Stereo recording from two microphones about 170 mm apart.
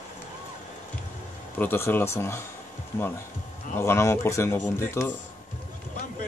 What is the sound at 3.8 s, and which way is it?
Speech, 15° left (ahead or behind).